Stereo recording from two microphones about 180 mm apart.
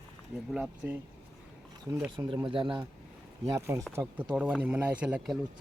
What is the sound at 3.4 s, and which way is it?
Speech, 15° right (ahead or behind).